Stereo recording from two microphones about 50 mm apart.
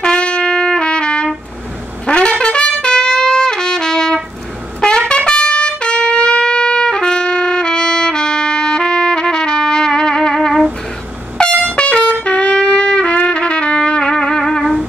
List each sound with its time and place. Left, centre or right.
0.0 s trumpet: left
11.4 s air horn: centre
11.7 s trumpet: left; by 14.8 s centre